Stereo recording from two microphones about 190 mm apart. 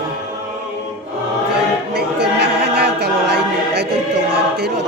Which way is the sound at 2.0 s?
60° right (ahead or behind).